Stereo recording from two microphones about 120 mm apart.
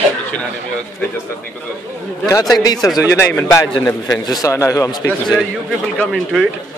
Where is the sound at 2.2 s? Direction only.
30° left (ahead or behind).